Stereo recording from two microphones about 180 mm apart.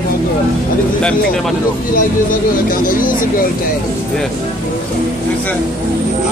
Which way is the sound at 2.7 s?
50° left (ahead or behind).